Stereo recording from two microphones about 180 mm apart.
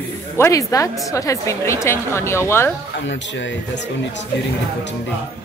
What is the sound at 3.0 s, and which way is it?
Speech, 80° left.